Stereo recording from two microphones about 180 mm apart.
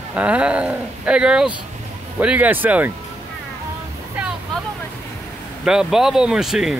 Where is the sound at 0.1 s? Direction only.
5° right (ahead or behind).